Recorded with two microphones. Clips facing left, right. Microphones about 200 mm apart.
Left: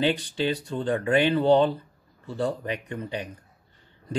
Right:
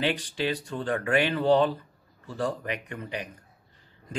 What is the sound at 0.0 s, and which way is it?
Speech, 30° left (ahead or behind).